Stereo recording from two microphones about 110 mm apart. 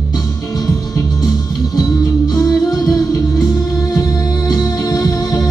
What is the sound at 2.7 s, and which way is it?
Music, 35° left (ahead or behind).